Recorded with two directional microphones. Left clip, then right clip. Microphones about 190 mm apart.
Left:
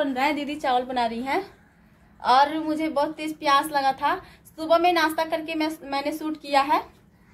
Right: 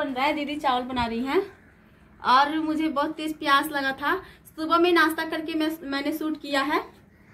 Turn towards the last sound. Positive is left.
turn(degrees=10)  # may be behind; listen again after turning